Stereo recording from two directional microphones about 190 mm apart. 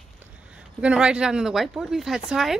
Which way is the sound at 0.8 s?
5° right (ahead or behind).